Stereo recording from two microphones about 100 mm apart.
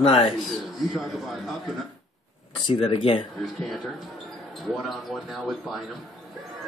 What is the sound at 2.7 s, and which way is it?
Speech, 65° left (ahead or behind).